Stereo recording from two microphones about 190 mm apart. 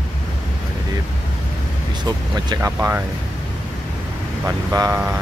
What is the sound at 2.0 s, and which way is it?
Speech, 20° right (ahead or behind).